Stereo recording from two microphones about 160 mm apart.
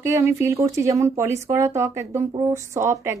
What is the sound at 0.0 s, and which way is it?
Speech, 15° right (ahead or behind).